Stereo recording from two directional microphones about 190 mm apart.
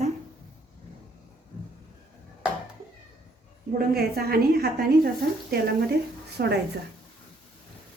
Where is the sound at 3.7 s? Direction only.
55° right (ahead or behind).